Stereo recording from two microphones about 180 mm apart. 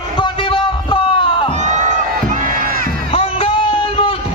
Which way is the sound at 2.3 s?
50° right (ahead or behind).